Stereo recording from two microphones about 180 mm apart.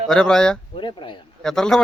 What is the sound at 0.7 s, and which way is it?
Speech, 25° left (ahead or behind).